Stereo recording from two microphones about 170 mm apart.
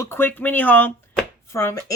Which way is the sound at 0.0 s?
15° left (ahead or behind).